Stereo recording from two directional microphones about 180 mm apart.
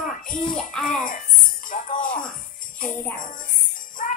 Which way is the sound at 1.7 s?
50° left (ahead or behind).